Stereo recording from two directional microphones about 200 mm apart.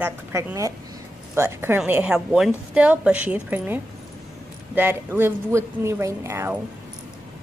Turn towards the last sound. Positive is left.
turn(degrees=-15)  # may be behind; listen again after turning